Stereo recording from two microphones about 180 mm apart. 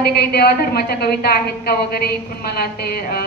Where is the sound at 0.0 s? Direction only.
60° left (ahead or behind).